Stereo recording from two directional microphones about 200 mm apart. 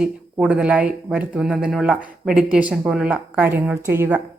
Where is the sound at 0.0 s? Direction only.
5° right (ahead or behind).